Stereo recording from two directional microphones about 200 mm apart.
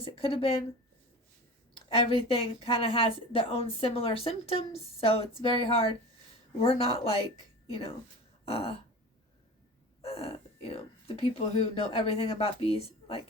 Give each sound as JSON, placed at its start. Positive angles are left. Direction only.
{"t": 0.0, "sound": "a woman's voice", "side_deg": 25}
{"t": 1.9, "sound": "a woman's voice", "side_deg": 30}
{"t": 8.4, "sound": "a woman's voice", "side_deg": 30}
{"t": 10.0, "sound": "a sound", "side_deg": 30}
{"t": 11.2, "sound": "a woman's voice", "side_deg": 30}